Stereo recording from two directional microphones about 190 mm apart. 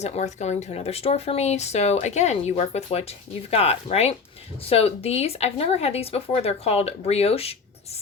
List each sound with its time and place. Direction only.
0.0 s speech: 35° left (ahead or behind)